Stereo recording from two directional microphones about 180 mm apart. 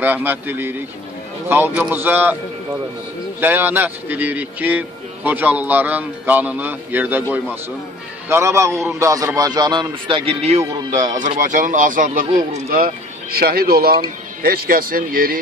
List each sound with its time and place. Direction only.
0.0 s speech: 10° right (ahead or behind)
3.3 s speech: 10° right (ahead or behind)
8.3 s a man's voice: 15° right (ahead or behind); by 10.6 s 35° right (ahead or behind)
10.6 s a man's voice: 20° right (ahead or behind)
11.1 s speech: 45° right (ahead or behind)